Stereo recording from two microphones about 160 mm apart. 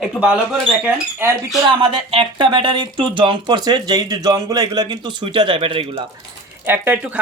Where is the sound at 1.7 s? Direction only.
35° right (ahead or behind).